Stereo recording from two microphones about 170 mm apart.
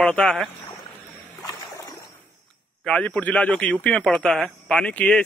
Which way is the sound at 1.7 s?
20° left (ahead or behind).